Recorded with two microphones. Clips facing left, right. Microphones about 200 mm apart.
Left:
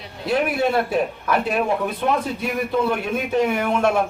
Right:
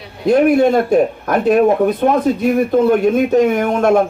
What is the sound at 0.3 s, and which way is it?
Speech, 45° right (ahead or behind).